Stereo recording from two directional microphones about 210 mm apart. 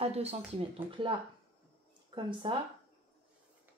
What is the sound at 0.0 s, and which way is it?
Speech, 30° right (ahead or behind).